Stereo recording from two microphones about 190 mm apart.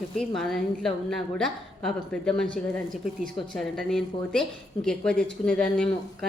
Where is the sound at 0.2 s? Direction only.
Centre (ahead or behind).